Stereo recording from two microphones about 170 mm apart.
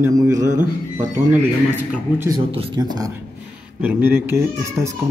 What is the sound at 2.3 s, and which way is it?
Speech, 30° right (ahead or behind).